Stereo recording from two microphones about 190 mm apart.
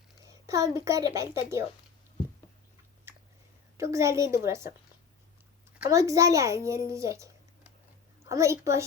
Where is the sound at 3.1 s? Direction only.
10° right (ahead or behind).